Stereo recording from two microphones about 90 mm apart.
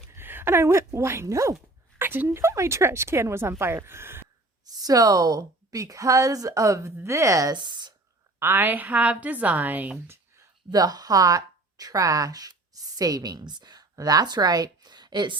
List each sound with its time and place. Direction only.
0.1 s a woman's voice: 25° right (ahead or behind)
4.6 s a woman's voice: 45° right (ahead or behind)
7.5 s speech: 55° right (ahead or behind)
8.4 s a woman's voice: 25° right (ahead or behind)
10.7 s speech: 45° right (ahead or behind)